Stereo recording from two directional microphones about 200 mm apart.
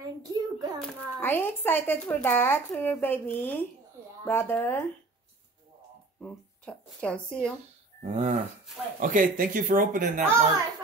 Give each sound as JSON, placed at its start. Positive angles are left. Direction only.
{"t": 0.0, "sound": "hands", "side_deg": -20}
{"t": 0.7, "sound": "a child's voice", "side_deg": 10}
{"t": 6.2, "sound": "speech", "side_deg": 5}
{"t": 8.0, "sound": "a sound", "side_deg": -35}
{"t": 9.0, "sound": "speech", "side_deg": -45}